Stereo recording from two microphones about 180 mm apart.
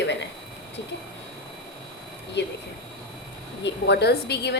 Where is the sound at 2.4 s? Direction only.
70° left (ahead or behind).